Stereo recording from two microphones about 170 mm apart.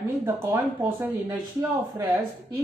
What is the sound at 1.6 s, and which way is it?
Speech, 15° right (ahead or behind).